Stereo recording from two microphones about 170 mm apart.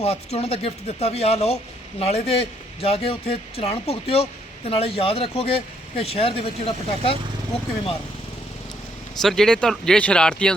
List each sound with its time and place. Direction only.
0.0 s a man's voice: 35° left (ahead or behind)
9.2 s speech: 5° left (ahead or behind)